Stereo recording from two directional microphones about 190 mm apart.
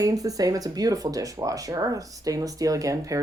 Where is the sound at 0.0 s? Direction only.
20° right (ahead or behind).